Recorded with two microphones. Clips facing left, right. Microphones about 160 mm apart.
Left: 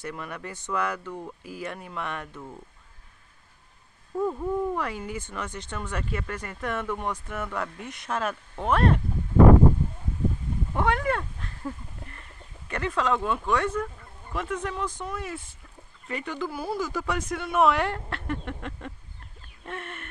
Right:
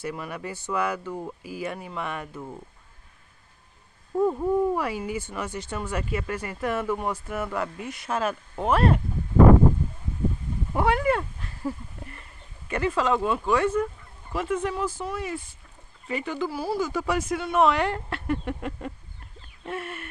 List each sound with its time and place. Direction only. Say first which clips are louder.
0.0 s speech: right 3 dB; 5° right (ahead or behind)
4.1 s speech: right 4 dB; 20° right (ahead or behind)
10.7 s a sound: right 3 dB; 10° right (ahead or behind)
12.6 s speech: right 3 dB; 5° right (ahead or behind)